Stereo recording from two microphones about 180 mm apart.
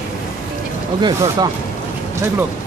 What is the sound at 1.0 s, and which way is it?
Speech, 20° right (ahead or behind).